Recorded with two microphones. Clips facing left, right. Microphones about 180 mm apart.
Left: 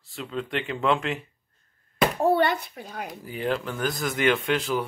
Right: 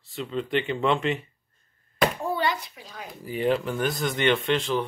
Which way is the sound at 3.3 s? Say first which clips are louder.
Right 4 dB; centre (ahead or behind).